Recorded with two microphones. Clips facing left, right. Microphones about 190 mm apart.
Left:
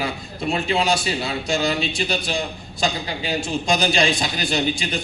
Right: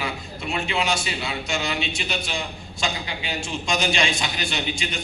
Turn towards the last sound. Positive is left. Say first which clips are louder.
# left 6 dB
turn(degrees=35)  # may be behind; listen again after turning